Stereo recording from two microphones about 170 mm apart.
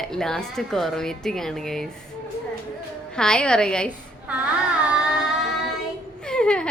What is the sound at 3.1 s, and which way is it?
Speech, 5° left (ahead or behind).